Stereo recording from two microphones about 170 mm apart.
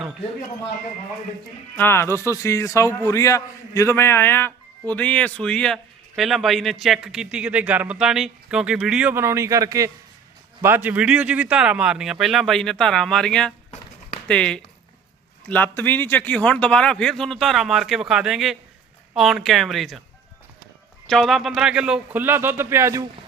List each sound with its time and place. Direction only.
1.7 s a man's voice: 15° left (ahead or behind)
21.1 s a man's voice: centre (ahead or behind); by 23.0 s 15° right (ahead or behind)